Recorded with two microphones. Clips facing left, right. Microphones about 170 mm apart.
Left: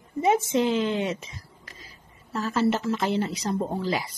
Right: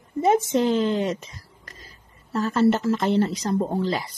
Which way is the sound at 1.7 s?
40° right (ahead or behind).